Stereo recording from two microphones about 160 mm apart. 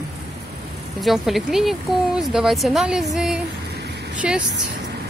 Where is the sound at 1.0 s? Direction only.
Centre (ahead or behind).